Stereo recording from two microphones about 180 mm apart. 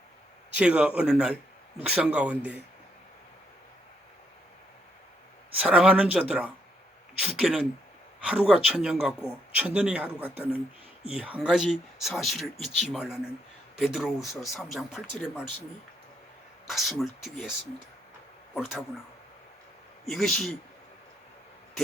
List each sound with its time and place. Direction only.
0.5 s speech: 5° right (ahead or behind)
5.5 s speech: 5° right (ahead or behind)
16.6 s speech: centre (ahead or behind)
18.5 s speech: centre (ahead or behind)
20.1 s speech: centre (ahead or behind)